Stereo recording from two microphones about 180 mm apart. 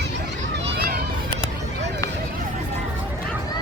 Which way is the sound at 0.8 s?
55° right (ahead or behind).